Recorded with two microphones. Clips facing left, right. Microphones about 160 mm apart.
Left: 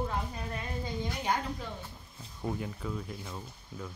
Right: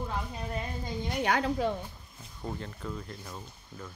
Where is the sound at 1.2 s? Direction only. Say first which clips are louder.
Right 8 dB; 80° right.